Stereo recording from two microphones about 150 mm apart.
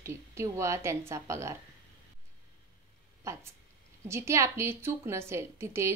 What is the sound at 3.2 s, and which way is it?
A woman's voice, 20° right (ahead or behind).